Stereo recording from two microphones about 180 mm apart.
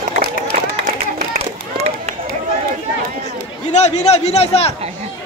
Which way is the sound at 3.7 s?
40° left (ahead or behind).